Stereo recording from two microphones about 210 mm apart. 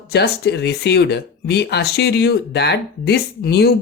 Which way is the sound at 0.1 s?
50° left (ahead or behind).